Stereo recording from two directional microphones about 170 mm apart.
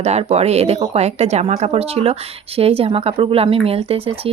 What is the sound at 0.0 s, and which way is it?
Speech, 40° right (ahead or behind).